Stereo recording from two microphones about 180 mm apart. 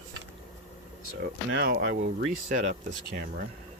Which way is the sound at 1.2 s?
75° right (ahead or behind).